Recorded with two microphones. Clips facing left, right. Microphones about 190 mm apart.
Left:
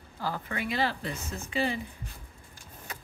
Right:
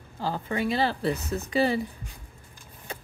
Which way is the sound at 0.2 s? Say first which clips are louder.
Right 5 dB; 30° right (ahead or behind).